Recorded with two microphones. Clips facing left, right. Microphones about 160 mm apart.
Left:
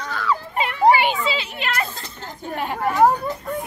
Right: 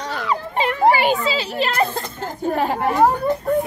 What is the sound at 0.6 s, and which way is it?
Children playing, 40° right (ahead or behind).